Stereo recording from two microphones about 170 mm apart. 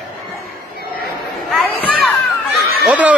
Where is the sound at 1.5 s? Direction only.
Centre (ahead or behind).